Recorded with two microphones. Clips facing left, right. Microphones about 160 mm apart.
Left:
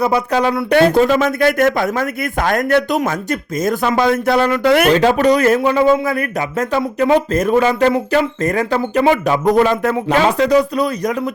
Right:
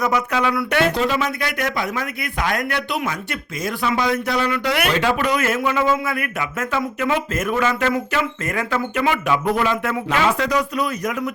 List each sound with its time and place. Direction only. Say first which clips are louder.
0.0 s a man's voice: left 5 dB; 35° left (ahead or behind)
0.9 s a man's voice: left 8 dB; 50° left (ahead or behind)